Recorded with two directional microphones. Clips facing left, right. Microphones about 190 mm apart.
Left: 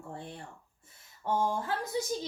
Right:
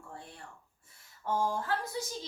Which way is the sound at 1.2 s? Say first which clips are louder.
Left 2 dB; 20° left (ahead or behind).